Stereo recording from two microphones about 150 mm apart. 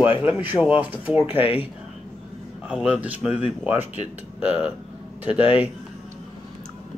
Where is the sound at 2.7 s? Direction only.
5° right (ahead or behind).